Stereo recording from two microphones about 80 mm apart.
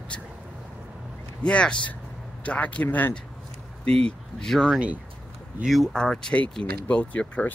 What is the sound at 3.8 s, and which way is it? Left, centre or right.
Speech, centre.